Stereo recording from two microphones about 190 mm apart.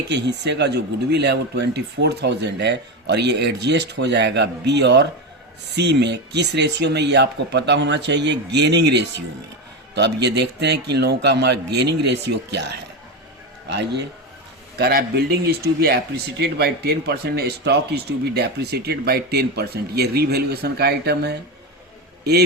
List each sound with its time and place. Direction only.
0.1 s speech: 65° right (ahead or behind)